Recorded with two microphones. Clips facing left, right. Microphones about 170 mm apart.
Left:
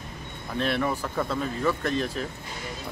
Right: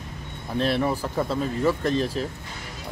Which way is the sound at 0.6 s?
35° right (ahead or behind).